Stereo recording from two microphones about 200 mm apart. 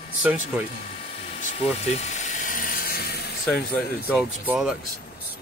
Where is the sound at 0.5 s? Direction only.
5° right (ahead or behind).